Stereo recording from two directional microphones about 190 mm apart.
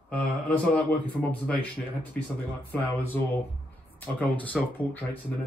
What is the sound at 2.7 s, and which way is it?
Speech, 10° left (ahead or behind).